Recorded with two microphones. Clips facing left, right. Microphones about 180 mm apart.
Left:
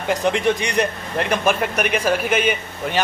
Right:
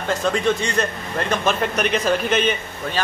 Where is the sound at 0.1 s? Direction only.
15° left (ahead or behind).